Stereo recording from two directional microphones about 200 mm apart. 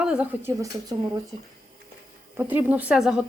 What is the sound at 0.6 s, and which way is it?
Speech, 15° right (ahead or behind).